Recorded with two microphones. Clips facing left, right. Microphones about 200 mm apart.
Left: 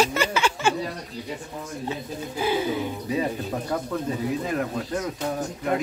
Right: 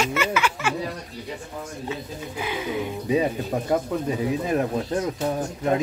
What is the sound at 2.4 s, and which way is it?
Speech, 35° left (ahead or behind).